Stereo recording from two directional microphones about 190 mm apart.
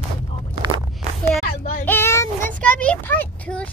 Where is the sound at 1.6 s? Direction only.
45° left (ahead or behind).